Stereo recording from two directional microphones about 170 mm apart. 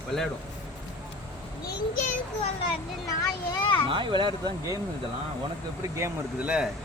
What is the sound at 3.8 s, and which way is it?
Speech, 30° right (ahead or behind).